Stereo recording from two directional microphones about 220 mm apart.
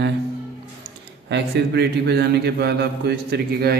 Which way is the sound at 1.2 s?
50° right (ahead or behind).